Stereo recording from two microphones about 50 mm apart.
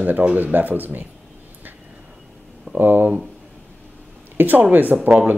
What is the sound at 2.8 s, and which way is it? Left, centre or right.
Speech, right.